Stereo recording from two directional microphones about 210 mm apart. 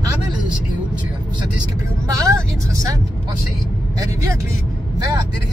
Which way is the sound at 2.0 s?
15° right (ahead or behind).